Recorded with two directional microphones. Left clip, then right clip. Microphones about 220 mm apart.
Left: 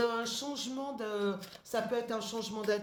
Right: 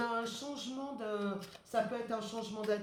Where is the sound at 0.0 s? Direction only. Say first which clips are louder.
Left 4 dB; 45° left (ahead or behind).